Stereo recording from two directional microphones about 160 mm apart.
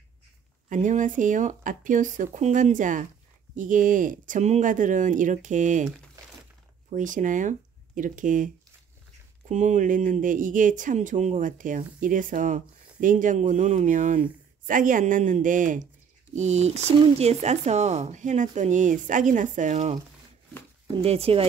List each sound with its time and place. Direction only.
0.7 s speech: 50° right (ahead or behind)
6.9 s speech: 50° right (ahead or behind)
9.5 s speech: 50° right (ahead or behind)